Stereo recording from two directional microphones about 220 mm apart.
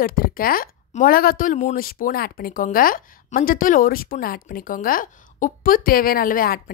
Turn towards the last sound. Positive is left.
turn(degrees=40)  # may be behind; listen again after turning